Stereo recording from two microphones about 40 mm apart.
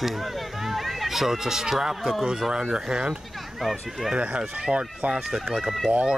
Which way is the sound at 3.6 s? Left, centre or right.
Centre.